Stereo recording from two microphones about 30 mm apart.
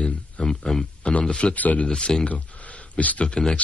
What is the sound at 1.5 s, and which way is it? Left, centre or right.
Speech, left.